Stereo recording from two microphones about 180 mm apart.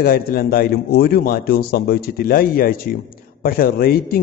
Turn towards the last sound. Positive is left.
turn(degrees=55)  # may be behind; listen again after turning